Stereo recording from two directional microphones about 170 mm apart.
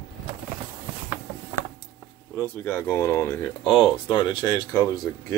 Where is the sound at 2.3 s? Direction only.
10° left (ahead or behind).